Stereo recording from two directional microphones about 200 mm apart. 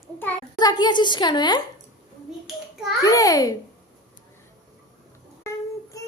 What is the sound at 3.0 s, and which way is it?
Speech, 15° left (ahead or behind).